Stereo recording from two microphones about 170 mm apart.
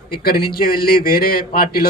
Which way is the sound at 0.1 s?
65° left (ahead or behind).